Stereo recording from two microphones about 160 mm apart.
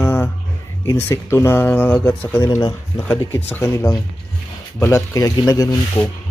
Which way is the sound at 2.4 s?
25° left (ahead or behind).